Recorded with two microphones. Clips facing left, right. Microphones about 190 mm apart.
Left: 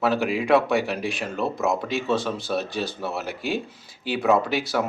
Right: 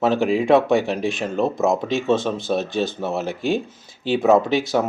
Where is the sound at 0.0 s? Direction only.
25° right (ahead or behind).